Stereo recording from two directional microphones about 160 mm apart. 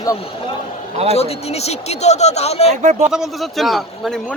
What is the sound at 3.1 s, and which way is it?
A man's voice, centre (ahead or behind).